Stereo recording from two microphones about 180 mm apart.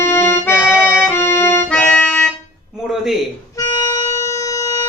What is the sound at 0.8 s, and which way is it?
Music, 10° left (ahead or behind).